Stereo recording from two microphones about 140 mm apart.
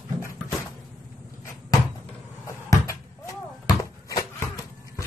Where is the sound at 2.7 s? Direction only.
20° left (ahead or behind).